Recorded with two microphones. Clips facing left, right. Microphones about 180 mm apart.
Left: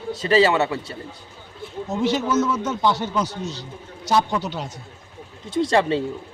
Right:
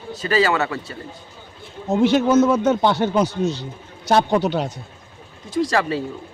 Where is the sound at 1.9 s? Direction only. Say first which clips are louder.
Right 6 dB; 55° right (ahead or behind).